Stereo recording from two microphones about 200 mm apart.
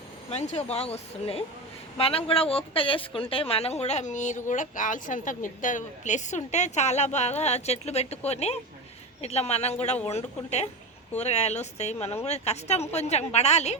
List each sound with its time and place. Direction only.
0.3 s speech: 30° left (ahead or behind)